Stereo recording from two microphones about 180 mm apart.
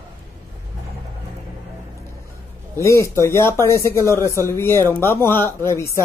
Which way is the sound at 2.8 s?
15° left (ahead or behind).